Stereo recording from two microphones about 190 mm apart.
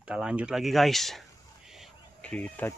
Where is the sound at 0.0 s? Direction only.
5° right (ahead or behind).